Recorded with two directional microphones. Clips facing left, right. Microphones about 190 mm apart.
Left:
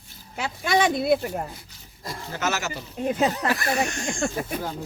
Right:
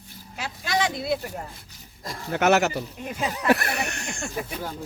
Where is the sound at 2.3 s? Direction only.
60° right (ahead or behind).